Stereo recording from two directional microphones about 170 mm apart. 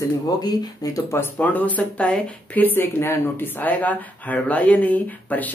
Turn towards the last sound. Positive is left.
turn(degrees=10)  # may be behind; listen again after turning